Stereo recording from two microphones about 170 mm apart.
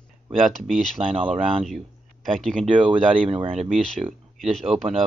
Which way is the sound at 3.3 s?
35° right (ahead or behind).